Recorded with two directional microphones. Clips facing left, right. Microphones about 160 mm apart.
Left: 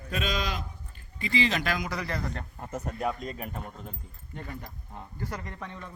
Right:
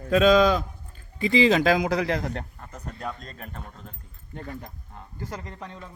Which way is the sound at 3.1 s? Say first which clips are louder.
Left 4 dB; 5° left (ahead or behind).